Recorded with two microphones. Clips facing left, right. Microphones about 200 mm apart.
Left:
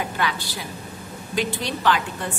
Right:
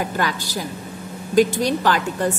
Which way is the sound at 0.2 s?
45° right (ahead or behind).